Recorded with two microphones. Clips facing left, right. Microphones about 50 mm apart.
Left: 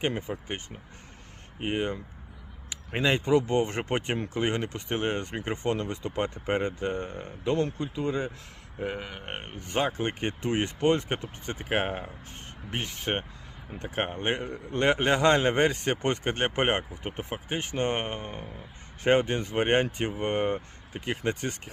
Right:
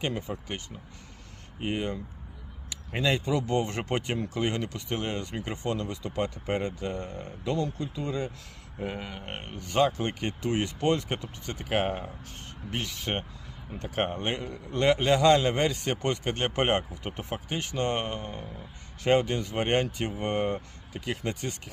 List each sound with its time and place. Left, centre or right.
0.0 s speech: left
11.9 s speech: centre
12.7 s speech: left